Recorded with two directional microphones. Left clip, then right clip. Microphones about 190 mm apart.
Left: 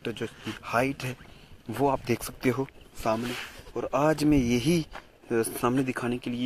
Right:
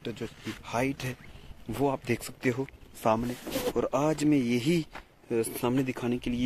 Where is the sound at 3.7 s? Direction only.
20° right (ahead or behind).